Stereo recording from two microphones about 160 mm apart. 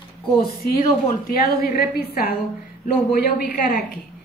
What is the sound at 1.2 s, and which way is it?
A woman's voice, 70° left (ahead or behind).